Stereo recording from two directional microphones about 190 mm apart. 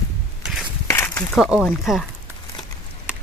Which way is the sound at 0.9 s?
15° left (ahead or behind).